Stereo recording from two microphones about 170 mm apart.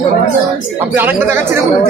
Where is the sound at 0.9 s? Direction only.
10° right (ahead or behind).